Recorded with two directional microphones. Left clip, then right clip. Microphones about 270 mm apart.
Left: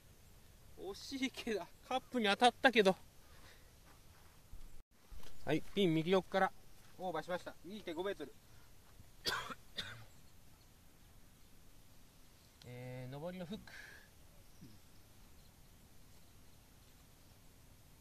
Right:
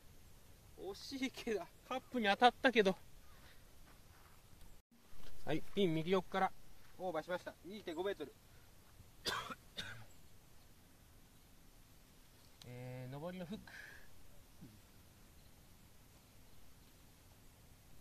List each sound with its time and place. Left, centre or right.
0.7 s speech: left
5.4 s speech: left
9.2 s throat clearing: centre
12.6 s a sound: centre